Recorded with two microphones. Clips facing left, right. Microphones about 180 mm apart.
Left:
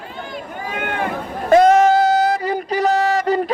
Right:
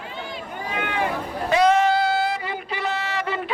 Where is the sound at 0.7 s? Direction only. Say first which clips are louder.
Left 2 dB; 50° left (ahead or behind).